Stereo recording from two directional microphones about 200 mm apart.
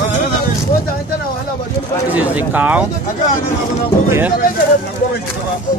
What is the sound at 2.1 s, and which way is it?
Speech, 10° right (ahead or behind).